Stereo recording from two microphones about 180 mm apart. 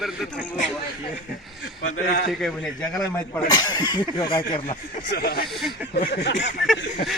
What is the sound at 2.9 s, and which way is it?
Speech, 15° left (ahead or behind).